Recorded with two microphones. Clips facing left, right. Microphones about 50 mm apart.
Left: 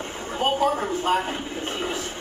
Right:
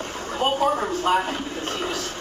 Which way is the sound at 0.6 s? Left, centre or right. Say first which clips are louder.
Right 1 dB; centre.